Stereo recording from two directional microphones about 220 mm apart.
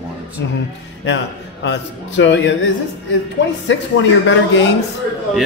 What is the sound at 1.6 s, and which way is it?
A man's voice, 55° left (ahead or behind).